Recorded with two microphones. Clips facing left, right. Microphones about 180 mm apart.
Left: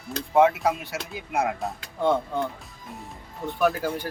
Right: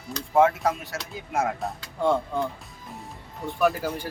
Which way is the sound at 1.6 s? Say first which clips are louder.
Even; centre (ahead or behind).